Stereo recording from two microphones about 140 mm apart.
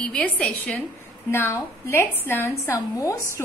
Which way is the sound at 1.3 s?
15° left (ahead or behind).